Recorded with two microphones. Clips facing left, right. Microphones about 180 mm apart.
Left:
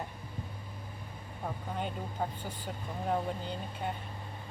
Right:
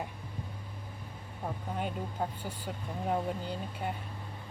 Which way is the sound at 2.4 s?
5° right (ahead or behind).